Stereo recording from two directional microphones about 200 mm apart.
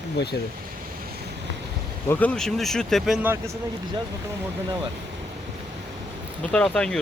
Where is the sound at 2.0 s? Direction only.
10° left (ahead or behind).